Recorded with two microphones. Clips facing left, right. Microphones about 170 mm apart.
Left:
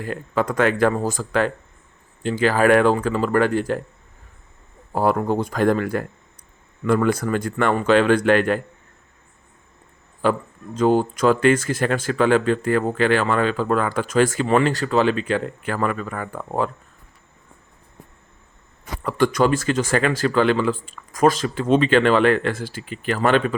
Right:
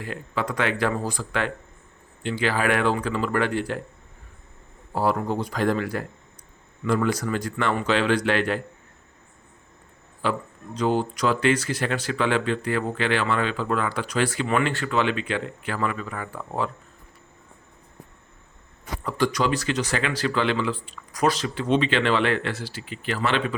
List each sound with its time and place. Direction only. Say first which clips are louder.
0.0 s speech: left 6 dB; 45° left (ahead or behind)
4.9 s speech: left 4 dB; 50° left (ahead or behind)
10.2 s speech: left 6 dB; 45° left (ahead or behind)
19.0 s speech: left 5 dB; 55° left (ahead or behind)